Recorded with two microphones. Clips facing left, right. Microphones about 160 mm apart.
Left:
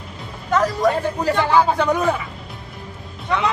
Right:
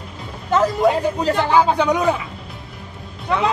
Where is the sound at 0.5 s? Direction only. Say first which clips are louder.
Right 2 dB; 25° right (ahead or behind).